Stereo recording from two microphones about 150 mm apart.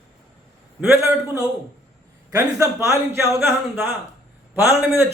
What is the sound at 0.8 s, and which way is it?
A man's voice, 15° right (ahead or behind).